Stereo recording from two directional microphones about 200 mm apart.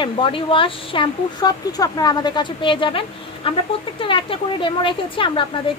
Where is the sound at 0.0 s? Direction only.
25° left (ahead or behind).